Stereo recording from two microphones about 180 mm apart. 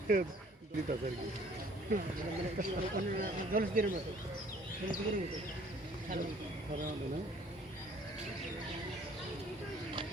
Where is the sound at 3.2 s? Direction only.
50° right (ahead or behind).